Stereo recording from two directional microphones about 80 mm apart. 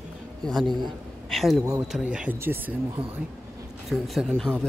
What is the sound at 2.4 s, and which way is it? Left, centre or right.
Speech, right.